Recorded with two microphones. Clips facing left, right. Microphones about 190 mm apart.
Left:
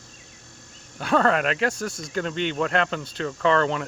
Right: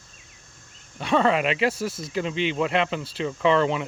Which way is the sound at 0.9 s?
Centre (ahead or behind).